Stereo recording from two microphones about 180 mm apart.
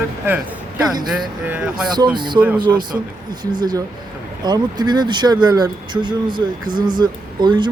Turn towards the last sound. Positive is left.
turn(degrees=-25)  # may be behind; listen again after turning